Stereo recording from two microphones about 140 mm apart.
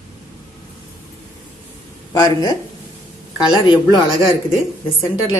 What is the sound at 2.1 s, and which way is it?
A woman's voice, 30° left (ahead or behind).